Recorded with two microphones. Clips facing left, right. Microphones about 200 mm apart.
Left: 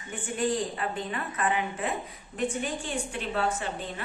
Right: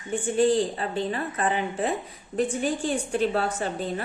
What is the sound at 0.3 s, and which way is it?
A woman's voice, 30° right (ahead or behind).